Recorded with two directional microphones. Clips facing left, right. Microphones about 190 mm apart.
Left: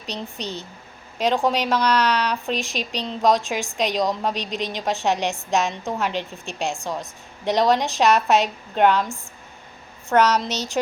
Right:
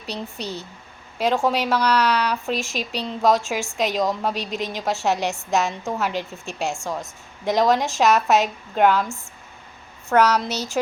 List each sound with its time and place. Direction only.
0.0 s speech: 10° right (ahead or behind)
10.1 s speech: 10° right (ahead or behind)